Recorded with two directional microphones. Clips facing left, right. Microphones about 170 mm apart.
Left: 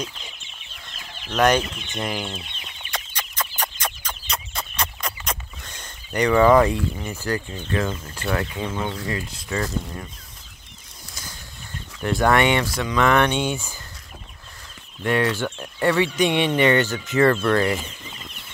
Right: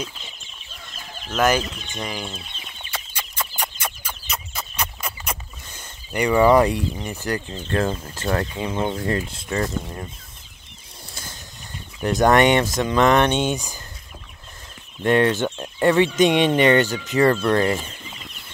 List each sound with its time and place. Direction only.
1.3 s speech: 5° right (ahead or behind)
2.9 s chicken: 10° right (ahead or behind)
7.3 s speech: 35° right (ahead or behind)
8.5 s speech: 20° right (ahead or behind)
12.0 s speech: 20° right (ahead or behind)
15.0 s speech: 25° right (ahead or behind)